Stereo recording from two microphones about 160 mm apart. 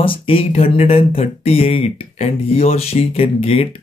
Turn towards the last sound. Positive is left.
turn(degrees=35)  # may be behind; listen again after turning